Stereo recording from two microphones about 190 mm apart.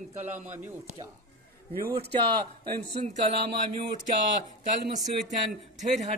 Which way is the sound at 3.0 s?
40° right (ahead or behind).